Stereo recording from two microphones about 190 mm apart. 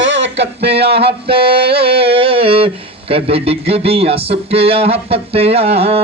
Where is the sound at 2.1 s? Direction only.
30° right (ahead or behind).